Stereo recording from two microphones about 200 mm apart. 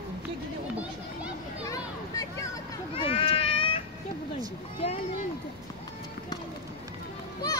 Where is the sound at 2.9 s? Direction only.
25° left (ahead or behind).